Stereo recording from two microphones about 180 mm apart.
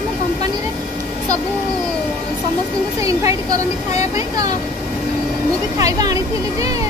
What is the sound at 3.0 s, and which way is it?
Speech, 20° right (ahead or behind).